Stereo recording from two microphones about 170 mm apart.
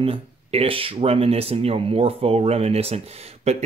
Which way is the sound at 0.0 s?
35° right (ahead or behind).